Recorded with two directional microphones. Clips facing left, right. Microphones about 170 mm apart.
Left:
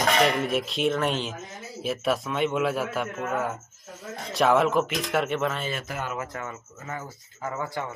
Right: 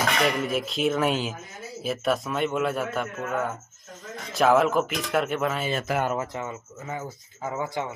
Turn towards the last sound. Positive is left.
turn(degrees=-15)  # may be behind; listen again after turning